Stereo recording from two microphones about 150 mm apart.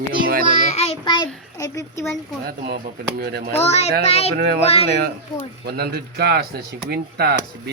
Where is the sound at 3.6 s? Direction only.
45° left (ahead or behind).